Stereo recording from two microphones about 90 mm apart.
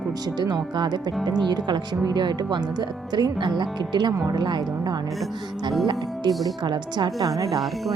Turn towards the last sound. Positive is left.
turn(degrees=-55)  # may be behind; listen again after turning